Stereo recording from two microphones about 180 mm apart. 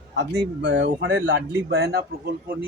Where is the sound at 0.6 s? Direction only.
70° right (ahead or behind).